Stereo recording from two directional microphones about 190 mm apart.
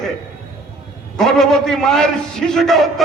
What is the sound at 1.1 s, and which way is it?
A man's voice, centre (ahead or behind).